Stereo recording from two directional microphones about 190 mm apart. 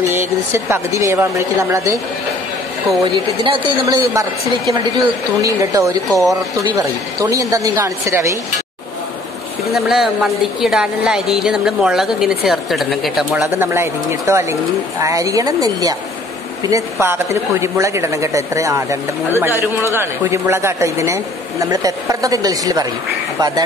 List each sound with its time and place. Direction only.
0.0 s a woman's voice: 10° right (ahead or behind)
3.0 s speech: 25° right (ahead or behind)
5.4 s a woman's voice: 15° right (ahead or behind)
9.7 s a woman's voice: centre (ahead or behind)
13.3 s a woman's voice: 15° right (ahead or behind)